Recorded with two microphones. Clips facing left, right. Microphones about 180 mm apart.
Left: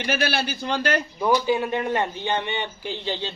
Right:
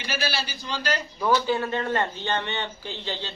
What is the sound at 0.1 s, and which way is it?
Speech, 60° left (ahead or behind).